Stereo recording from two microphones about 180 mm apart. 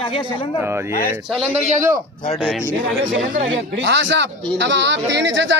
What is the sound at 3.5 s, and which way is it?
A man's voice, 85° right.